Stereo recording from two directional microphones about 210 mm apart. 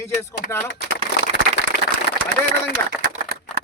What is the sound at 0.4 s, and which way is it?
Speech, 50° left (ahead or behind).